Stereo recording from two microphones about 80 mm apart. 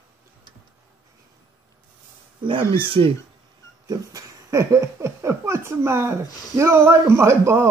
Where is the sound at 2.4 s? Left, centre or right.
Right.